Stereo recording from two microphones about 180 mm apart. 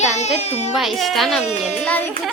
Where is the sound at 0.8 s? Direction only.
Centre (ahead or behind).